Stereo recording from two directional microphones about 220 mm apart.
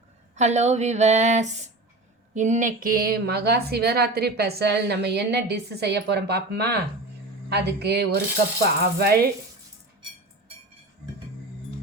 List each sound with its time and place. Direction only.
0.3 s speech: 30° right (ahead or behind)